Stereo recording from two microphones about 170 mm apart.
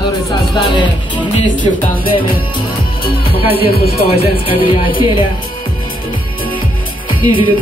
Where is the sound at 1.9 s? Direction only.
30° left (ahead or behind).